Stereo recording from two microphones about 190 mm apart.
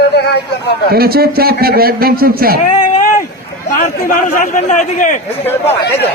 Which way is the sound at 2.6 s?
40° left (ahead or behind).